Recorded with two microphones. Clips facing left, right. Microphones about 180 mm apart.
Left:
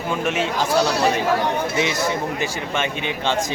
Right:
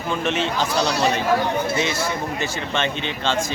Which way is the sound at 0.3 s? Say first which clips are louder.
Even; 10° left (ahead or behind).